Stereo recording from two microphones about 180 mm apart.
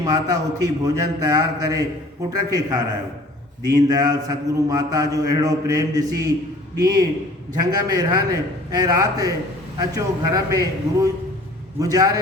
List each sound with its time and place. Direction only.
0.0 s a man's voice: 20° right (ahead or behind)